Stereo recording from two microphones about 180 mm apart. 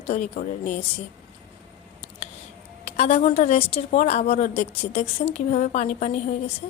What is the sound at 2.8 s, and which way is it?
A woman's voice, 35° left (ahead or behind).